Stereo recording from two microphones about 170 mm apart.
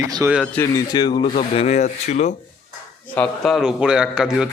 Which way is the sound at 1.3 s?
35° left (ahead or behind).